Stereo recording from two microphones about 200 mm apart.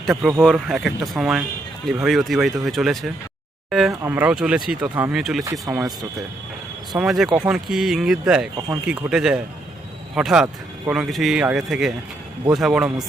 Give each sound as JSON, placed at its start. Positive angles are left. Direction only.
{"t": 0.0, "sound": "speech", "side_deg": 0}
{"t": 5.5, "sound": "speech", "side_deg": -15}
{"t": 7.0, "sound": "speech", "side_deg": 0}
{"t": 8.5, "sound": "speech", "side_deg": -20}
{"t": 8.9, "sound": "speech", "side_deg": -5}